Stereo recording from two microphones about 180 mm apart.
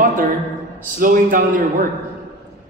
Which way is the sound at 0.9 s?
50° right (ahead or behind).